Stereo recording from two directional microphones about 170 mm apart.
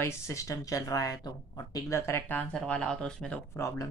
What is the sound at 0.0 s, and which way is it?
Speech, 15° left (ahead or behind).